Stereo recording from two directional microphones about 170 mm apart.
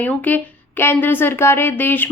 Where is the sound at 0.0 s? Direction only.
10° left (ahead or behind).